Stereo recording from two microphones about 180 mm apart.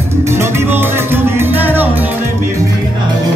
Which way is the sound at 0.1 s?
15° right (ahead or behind).